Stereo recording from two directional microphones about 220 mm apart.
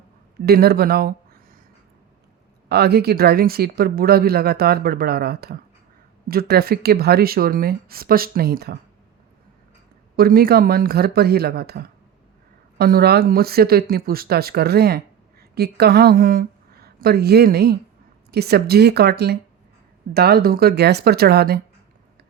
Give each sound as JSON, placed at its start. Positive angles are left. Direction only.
{"t": 0.4, "sound": "speech", "side_deg": -45}
{"t": 2.6, "sound": "speech", "side_deg": -45}
{"t": 10.2, "sound": "speech", "side_deg": -45}